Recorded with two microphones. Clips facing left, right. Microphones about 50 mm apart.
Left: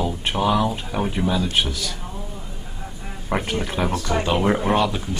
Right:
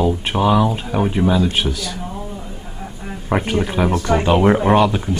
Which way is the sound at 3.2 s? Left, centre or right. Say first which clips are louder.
Right 5 dB; centre.